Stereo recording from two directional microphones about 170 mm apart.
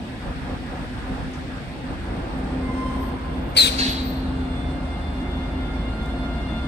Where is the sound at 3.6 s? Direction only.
80° left.